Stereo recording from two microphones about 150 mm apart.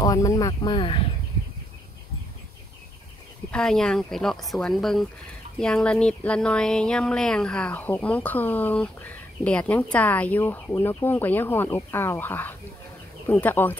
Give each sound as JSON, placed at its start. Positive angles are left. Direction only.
{"t": 0.0, "sound": "speech", "side_deg": 25}
{"t": 3.5, "sound": "speech", "side_deg": 5}